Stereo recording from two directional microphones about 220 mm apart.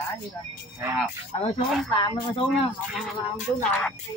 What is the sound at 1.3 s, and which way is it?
Speech, 30° left (ahead or behind).